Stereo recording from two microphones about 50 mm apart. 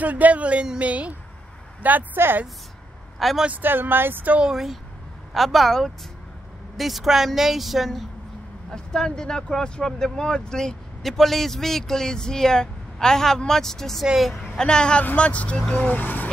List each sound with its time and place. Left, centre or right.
0.0 s speech: right
2.1 s speech: right
3.2 s speech: centre
3.6 s speech: right
4.4 s speech: centre
8.7 s speech: centre
14.5 s speech: centre
16.0 s speech: left